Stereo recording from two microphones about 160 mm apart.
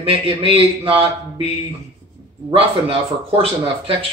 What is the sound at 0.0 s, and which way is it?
Speech, 35° right (ahead or behind).